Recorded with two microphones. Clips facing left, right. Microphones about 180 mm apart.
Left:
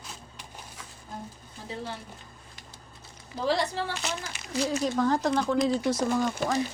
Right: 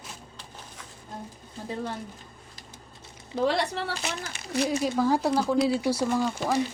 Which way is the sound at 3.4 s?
65° right (ahead or behind).